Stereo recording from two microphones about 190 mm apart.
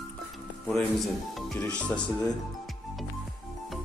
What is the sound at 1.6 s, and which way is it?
Speech, 5° left (ahead or behind).